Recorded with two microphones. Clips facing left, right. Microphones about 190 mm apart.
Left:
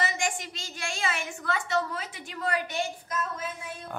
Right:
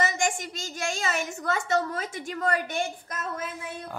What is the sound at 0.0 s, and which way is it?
A woman's voice, 45° right (ahead or behind).